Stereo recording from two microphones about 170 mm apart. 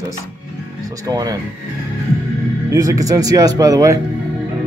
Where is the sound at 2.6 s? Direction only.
20° right (ahead or behind).